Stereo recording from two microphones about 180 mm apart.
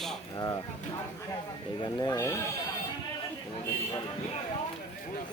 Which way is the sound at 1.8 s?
20° left (ahead or behind).